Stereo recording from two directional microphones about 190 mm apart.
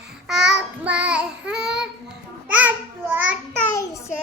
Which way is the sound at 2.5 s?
10° right (ahead or behind).